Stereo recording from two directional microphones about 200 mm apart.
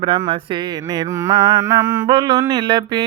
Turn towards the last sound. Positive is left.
turn(degrees=-20)  # may be behind; listen again after turning